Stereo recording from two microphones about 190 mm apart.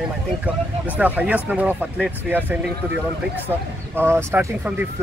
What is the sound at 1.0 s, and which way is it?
Speech, 10° right (ahead or behind).